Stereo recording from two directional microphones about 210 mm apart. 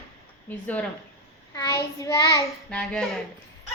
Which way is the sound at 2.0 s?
15° left (ahead or behind).